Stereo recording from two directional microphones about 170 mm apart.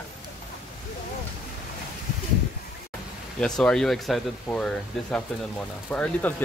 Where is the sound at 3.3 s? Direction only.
5° left (ahead or behind).